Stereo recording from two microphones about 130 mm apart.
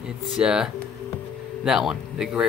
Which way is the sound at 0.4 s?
5° right (ahead or behind).